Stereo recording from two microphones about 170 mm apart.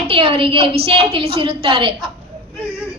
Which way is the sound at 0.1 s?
35° right (ahead or behind).